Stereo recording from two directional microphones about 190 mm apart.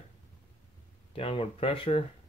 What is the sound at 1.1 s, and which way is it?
Speech, 30° left (ahead or behind).